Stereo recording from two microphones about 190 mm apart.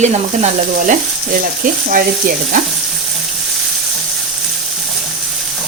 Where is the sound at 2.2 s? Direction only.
45° right (ahead or behind).